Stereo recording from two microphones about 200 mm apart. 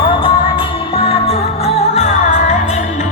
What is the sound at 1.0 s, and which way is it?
Music, 30° left (ahead or behind).